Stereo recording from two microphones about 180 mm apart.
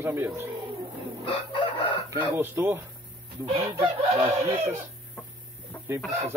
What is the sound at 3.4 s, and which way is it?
Chicken, 35° right (ahead or behind).